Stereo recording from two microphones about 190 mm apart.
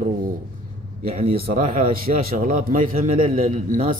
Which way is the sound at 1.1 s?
30° right (ahead or behind).